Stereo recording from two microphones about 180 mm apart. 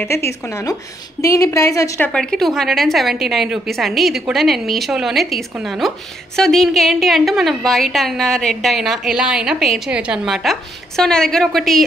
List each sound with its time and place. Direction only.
0.0 s a woman's voice: 15° left (ahead or behind)
2.1 s a woman's voice: centre (ahead or behind)